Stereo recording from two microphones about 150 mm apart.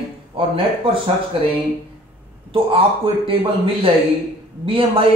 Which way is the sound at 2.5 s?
40° right (ahead or behind).